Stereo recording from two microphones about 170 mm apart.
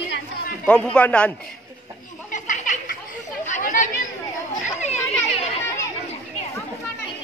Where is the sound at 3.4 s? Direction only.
45° left (ahead or behind).